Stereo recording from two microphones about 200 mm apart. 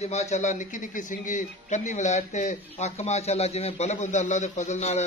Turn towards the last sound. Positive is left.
turn(degrees=35)  # may be behind; listen again after turning